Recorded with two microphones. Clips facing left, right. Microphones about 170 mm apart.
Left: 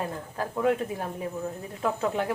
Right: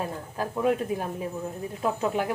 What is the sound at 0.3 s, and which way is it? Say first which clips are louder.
Speech: even; 15° right (ahead or behind).